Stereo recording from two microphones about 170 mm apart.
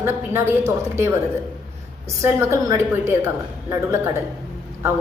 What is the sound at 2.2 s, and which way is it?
A woman's voice, 15° right (ahead or behind).